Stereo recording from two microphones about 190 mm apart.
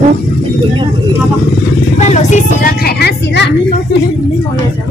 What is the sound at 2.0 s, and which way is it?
Vehicle, 40° left (ahead or behind).